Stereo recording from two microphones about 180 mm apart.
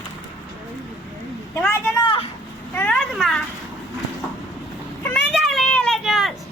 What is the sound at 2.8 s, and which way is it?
Speech, 5° left (ahead or behind).